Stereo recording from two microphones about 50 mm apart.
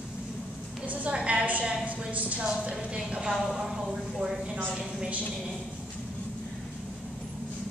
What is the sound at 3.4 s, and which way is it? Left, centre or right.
Speech, centre.